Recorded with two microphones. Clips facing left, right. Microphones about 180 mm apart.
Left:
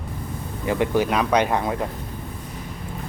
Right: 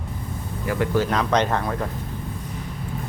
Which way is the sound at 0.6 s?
20° left (ahead or behind).